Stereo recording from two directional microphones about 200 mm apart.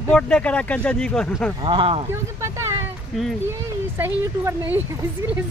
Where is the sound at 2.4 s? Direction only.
15° right (ahead or behind).